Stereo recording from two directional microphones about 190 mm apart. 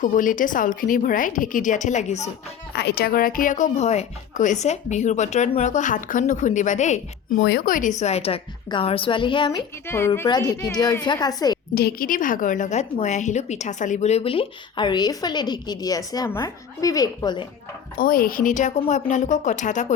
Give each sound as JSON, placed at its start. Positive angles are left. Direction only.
{"t": 0.0, "sound": "speech", "side_deg": 45}
{"t": 2.7, "sound": "a woman's voice", "side_deg": 55}
{"t": 7.4, "sound": "a woman's voice", "side_deg": 50}
{"t": 11.7, "sound": "a woman's voice", "side_deg": 55}
{"t": 17.9, "sound": "a woman's voice", "side_deg": 50}